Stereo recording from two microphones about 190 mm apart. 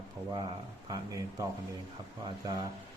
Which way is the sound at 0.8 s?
20° right (ahead or behind).